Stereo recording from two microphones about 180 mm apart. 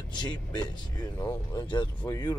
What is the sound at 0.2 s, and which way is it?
Speech, 25° left (ahead or behind).